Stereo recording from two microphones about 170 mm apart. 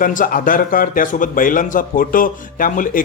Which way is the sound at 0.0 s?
50° left (ahead or behind).